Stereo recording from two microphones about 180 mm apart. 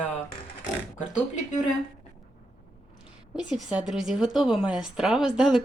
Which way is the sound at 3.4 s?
5° right (ahead or behind).